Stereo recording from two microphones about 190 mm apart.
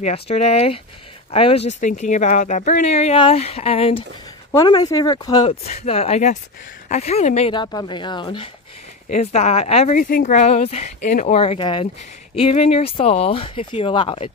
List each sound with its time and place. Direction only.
0.0 s speech: 35° left (ahead or behind)
4.5 s speech: 20° left (ahead or behind)
5.8 s speech: 30° left (ahead or behind)
9.1 s speech: 35° left (ahead or behind)
10.0 s speech: 45° left (ahead or behind)
11.3 s speech: 30° left (ahead or behind)